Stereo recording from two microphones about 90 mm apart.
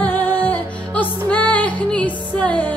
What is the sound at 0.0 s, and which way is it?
Music, 20° left (ahead or behind).